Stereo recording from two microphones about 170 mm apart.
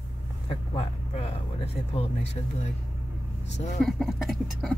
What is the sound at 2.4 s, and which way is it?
Speech, 30° left (ahead or behind).